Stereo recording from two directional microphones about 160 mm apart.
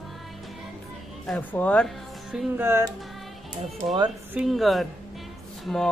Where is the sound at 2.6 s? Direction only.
20° right (ahead or behind).